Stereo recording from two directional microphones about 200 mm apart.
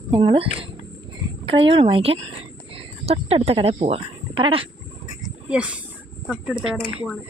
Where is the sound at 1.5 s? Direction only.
25° right (ahead or behind).